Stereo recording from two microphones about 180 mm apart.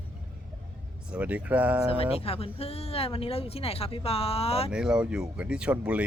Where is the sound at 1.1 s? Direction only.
10° right (ahead or behind).